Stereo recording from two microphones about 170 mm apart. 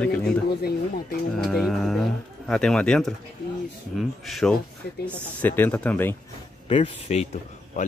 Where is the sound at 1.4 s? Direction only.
Centre (ahead or behind).